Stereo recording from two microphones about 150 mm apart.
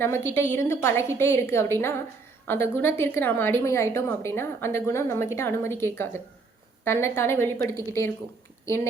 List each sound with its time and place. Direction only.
0.0 s a woman's voice: 15° left (ahead or behind)